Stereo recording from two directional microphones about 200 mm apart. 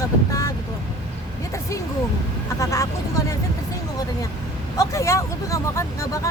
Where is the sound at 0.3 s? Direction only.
15° left (ahead or behind).